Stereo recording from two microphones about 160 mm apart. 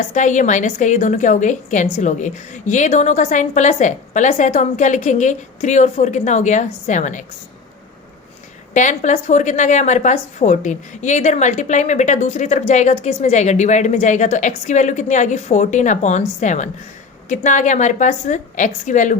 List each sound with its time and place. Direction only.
0.1 s a woman's voice: 50° left (ahead or behind)
8.7 s a woman's voice: 50° left (ahead or behind)